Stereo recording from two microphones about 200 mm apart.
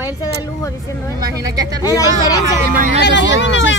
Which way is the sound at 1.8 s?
20° left (ahead or behind).